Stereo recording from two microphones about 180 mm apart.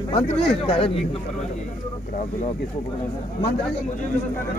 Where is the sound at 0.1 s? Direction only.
30° left (ahead or behind).